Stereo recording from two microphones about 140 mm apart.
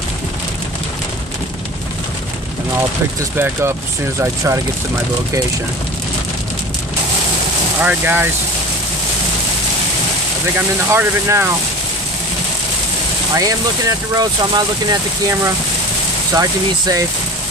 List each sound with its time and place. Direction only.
3.3 s speech: 15° right (ahead or behind)
7.8 s speech: 10° right (ahead or behind)
10.9 s speech: 20° right (ahead or behind)
13.4 s speech: 25° right (ahead or behind)